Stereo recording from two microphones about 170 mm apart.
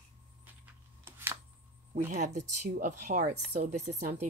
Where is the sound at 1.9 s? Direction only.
45° right (ahead or behind).